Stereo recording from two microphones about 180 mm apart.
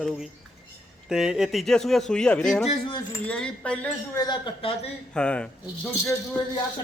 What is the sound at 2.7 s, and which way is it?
Speech, 30° left (ahead or behind).